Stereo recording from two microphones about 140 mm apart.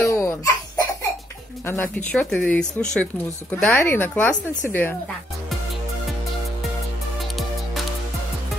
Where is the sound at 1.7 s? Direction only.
15° left (ahead or behind).